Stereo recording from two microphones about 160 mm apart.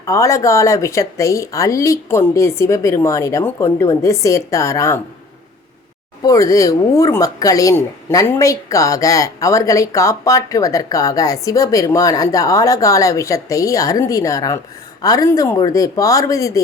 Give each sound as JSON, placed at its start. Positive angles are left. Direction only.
{"t": 0.0, "sound": "speech", "side_deg": 20}
{"t": 6.2, "sound": "speech", "side_deg": 20}